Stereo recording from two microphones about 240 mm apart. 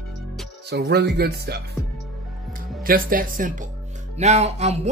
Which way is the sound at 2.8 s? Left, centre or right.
Right.